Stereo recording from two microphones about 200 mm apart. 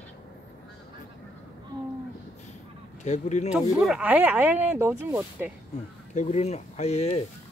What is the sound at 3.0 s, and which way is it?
Speech, 35° left (ahead or behind).